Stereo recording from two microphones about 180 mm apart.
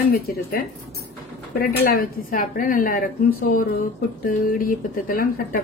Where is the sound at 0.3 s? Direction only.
55° left (ahead or behind).